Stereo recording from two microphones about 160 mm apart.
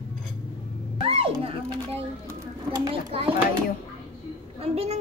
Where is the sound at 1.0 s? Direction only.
35° right (ahead or behind).